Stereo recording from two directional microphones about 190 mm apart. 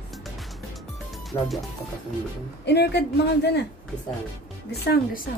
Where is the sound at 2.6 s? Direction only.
65° left (ahead or behind).